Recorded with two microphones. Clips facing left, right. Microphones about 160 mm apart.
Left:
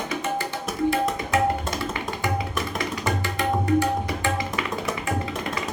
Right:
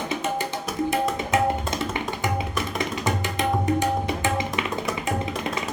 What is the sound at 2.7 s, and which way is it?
Tabla, 20° right (ahead or behind).